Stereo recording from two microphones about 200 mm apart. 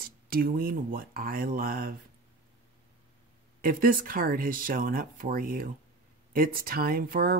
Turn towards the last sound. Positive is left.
turn(degrees=-45)  # may be behind; listen again after turning